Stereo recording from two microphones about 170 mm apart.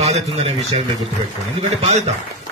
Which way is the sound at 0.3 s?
40° right (ahead or behind).